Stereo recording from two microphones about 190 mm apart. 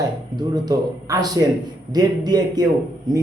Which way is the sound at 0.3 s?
20° right (ahead or behind).